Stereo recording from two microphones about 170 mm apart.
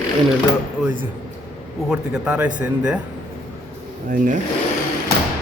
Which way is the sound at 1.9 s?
5° right (ahead or behind).